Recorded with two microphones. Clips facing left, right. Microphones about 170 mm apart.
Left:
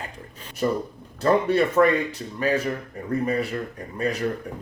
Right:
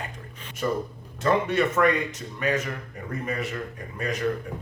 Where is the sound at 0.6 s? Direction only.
35° left (ahead or behind).